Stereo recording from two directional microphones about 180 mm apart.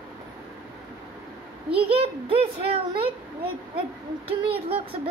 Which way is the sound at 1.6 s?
30° right (ahead or behind).